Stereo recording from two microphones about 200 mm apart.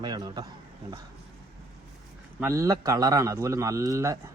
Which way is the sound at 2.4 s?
15° right (ahead or behind).